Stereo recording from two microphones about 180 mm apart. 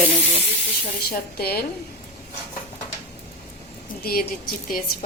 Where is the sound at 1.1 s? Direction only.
60° left (ahead or behind).